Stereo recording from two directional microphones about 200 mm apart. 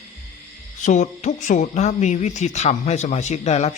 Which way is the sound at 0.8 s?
35° left (ahead or behind).